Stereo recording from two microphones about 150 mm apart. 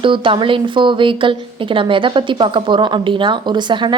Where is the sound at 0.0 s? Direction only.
35° right (ahead or behind).